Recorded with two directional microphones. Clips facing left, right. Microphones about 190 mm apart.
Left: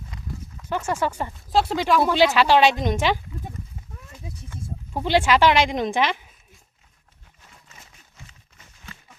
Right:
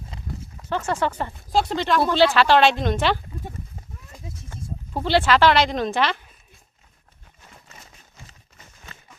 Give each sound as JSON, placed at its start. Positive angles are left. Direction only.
{"t": 0.1, "sound": "horse", "side_deg": -25}
{"t": 0.7, "sound": "speech", "side_deg": 10}
{"t": 4.9, "sound": "speech", "side_deg": 15}